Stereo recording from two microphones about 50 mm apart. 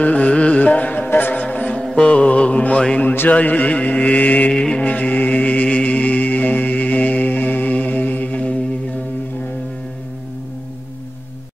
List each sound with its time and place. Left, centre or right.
0.0 s music: left
1.8 s mantra: centre; by 4.5 s left
4.5 s music: centre
4.8 s mantra: left